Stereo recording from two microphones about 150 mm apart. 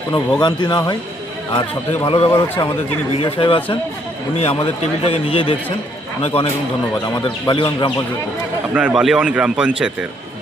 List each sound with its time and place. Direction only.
0.1 s speech: 30° left (ahead or behind)
2.0 s a man's voice: 40° left (ahead or behind)
8.7 s speech: 10° right (ahead or behind)